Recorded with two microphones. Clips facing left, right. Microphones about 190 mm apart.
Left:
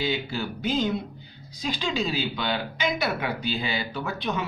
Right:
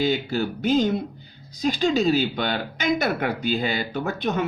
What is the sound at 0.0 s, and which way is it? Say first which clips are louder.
Speech: right 5 dB; 45° right (ahead or behind).